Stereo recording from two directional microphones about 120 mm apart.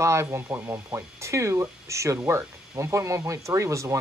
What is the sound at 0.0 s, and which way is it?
Speech, 25° right (ahead or behind).